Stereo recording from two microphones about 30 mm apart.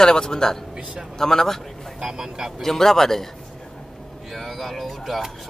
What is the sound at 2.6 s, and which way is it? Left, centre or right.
Speech, centre.